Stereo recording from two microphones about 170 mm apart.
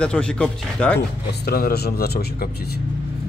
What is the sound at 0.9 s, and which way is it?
Speech, 70° left (ahead or behind).